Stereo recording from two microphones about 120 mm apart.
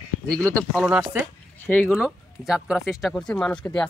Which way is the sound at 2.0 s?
5° right (ahead or behind).